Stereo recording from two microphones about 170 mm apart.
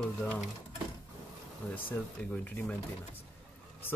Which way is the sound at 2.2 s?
10° left (ahead or behind).